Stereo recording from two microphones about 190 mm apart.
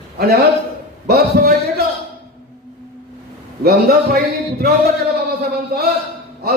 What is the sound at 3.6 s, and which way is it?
Speech, 55° right (ahead or behind).